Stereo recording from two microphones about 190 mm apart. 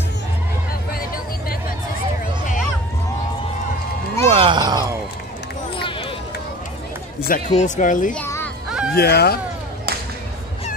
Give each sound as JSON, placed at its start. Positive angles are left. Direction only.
{"t": 0.9, "sound": "a sound", "side_deg": 50}
{"t": 4.3, "sound": "a sound", "side_deg": -30}
{"t": 7.2, "sound": "speech", "side_deg": 45}
{"t": 8.1, "sound": "music", "side_deg": 10}
{"t": 8.6, "sound": "fowl", "side_deg": -5}
{"t": 8.9, "sound": "speech", "side_deg": 55}